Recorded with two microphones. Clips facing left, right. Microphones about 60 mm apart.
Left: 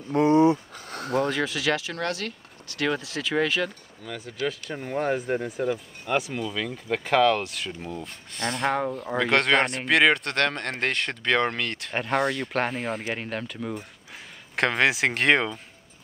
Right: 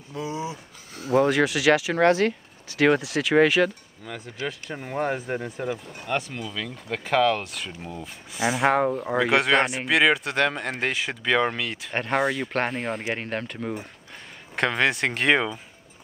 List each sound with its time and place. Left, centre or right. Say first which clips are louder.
0.1 s a sound: left 12 dB; left
1.1 s speech: right 5 dB; centre
2.0 s speech: right 10 dB; right
3.0 s speech: right 6 dB; centre
14.5 s speech: even; centre